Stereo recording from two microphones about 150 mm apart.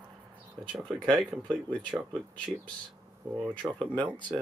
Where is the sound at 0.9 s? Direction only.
5° left (ahead or behind).